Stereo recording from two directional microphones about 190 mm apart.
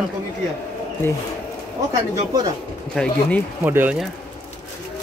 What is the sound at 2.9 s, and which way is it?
Speech, 5° left (ahead or behind).